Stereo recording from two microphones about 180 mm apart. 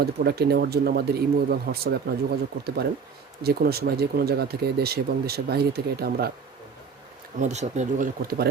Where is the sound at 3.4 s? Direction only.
60° right (ahead or behind).